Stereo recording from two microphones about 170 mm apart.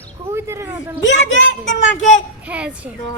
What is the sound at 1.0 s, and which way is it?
Speech, 90° left.